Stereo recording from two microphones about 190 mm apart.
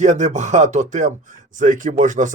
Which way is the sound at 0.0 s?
40° right (ahead or behind).